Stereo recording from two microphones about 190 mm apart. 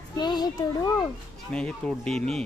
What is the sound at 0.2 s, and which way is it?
Speech, 20° left (ahead or behind).